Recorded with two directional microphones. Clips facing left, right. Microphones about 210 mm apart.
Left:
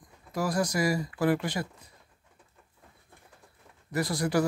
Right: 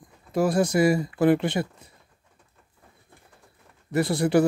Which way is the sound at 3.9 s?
25° right (ahead or behind).